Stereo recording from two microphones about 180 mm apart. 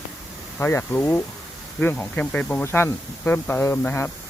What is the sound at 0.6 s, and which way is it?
Speech, 15° left (ahead or behind).